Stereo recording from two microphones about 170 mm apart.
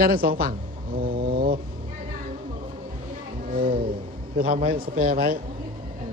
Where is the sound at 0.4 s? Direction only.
60° right (ahead or behind).